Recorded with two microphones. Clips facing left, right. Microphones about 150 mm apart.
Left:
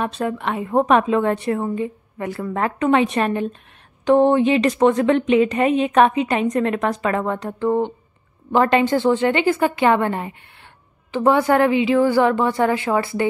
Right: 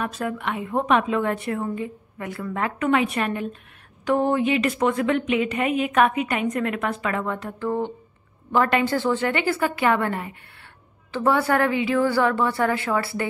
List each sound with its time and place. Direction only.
0.0 s a woman's voice: 30° left (ahead or behind)
1.0 s a woman's voice: 30° left (ahead or behind)